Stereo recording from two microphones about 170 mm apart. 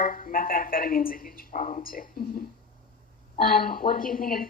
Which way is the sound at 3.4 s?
55° left (ahead or behind).